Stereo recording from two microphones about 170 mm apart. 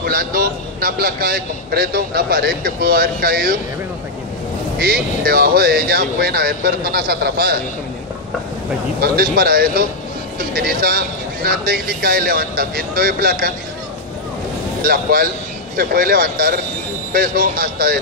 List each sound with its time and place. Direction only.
0.0 s speech: 55° right (ahead or behind)
4.7 s speech: 60° right (ahead or behind)
9.0 s speech: 60° right (ahead or behind)
14.8 s speech: 60° right (ahead or behind)